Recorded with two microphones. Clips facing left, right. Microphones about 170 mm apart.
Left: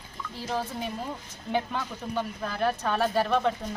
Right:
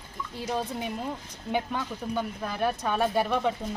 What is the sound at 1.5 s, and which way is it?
Speech, 10° right (ahead or behind).